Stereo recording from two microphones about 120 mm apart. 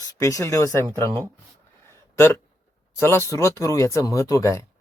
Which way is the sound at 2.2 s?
20° left (ahead or behind).